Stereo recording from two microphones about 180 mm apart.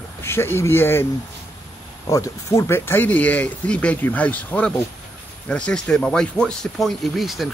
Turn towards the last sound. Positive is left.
turn(degrees=0)  # may be behind; listen again after turning